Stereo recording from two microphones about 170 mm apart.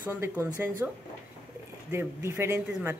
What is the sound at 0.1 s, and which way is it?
Speech, 15° right (ahead or behind).